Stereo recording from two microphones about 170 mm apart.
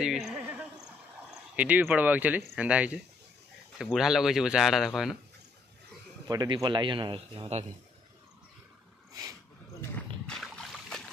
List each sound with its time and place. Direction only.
0.0 s a sound: 5° right (ahead or behind)
1.3 s speech: 10° right (ahead or behind)
6.2 s a man's voice: 20° right (ahead or behind)
9.8 s rowboat: 5° left (ahead or behind)